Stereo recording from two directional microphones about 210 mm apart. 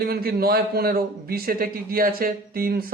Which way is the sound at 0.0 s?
45° right (ahead or behind).